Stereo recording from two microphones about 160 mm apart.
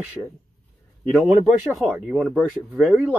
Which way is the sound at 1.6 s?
5° right (ahead or behind).